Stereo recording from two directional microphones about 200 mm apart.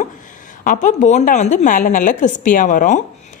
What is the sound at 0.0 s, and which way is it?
A woman's voice, 40° left (ahead or behind).